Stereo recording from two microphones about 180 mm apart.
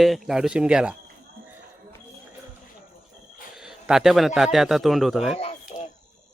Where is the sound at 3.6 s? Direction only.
5° right (ahead or behind).